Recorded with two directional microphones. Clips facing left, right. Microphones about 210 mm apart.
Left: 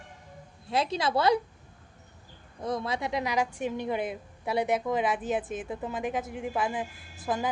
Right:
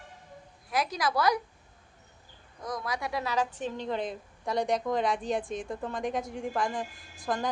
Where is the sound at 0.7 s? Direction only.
25° left (ahead or behind).